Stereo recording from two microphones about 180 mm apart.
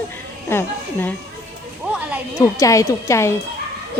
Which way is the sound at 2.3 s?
20° left (ahead or behind).